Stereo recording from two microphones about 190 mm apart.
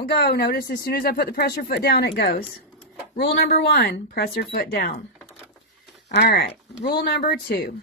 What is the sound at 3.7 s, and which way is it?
Speech, 60° left (ahead or behind).